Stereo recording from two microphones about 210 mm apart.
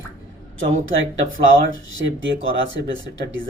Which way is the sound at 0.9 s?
65° right (ahead or behind).